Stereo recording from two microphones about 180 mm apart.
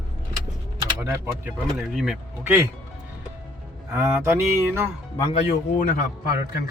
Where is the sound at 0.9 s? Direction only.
15° right (ahead or behind).